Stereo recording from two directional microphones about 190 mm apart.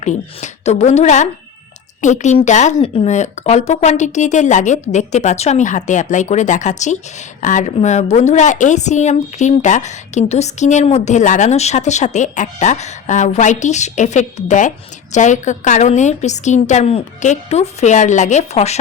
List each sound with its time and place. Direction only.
0.0 s speech: 40° left (ahead or behind)